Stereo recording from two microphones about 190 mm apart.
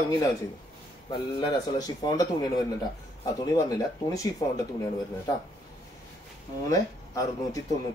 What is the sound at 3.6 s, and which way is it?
Speech, 20° left (ahead or behind).